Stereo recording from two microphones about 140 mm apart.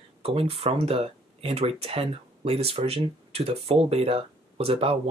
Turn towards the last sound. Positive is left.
turn(degrees=-45)  # may be behind; listen again after turning